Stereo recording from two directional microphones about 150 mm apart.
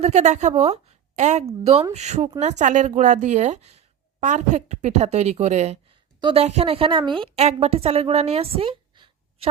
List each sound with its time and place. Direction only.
0.0 s speech: 50° right (ahead or behind)
6.1 s a woman's voice: 30° right (ahead or behind)
6.4 s a woman's voice: 45° right (ahead or behind)